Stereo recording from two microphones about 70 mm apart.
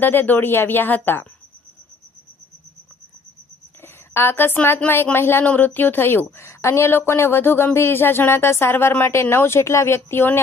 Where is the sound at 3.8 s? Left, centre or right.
Left.